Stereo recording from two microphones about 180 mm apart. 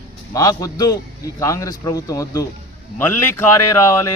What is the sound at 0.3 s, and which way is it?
A man's voice, 20° left (ahead or behind).